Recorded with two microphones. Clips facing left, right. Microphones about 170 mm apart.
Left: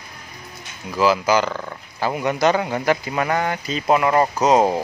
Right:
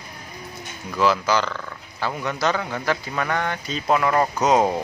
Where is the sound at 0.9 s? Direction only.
10° left (ahead or behind).